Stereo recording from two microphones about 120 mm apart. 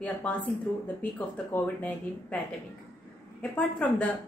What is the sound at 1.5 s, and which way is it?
Speech, 15° left (ahead or behind).